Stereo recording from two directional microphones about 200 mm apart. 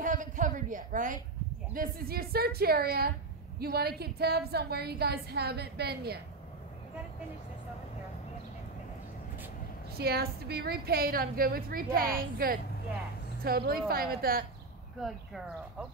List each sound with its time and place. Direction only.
0.0 s a sound: 40° right (ahead or behind)
1.7 s a woman's voice: 45° right (ahead or behind)
9.9 s a woman's voice: 50° right (ahead or behind)
15.0 s speech: centre (ahead or behind)